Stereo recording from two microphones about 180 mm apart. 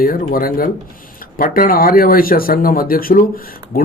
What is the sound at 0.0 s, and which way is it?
A man's voice, 55° left (ahead or behind).